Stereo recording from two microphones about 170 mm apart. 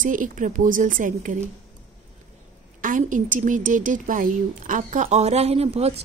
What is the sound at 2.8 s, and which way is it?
A woman's voice, 50° right (ahead or behind).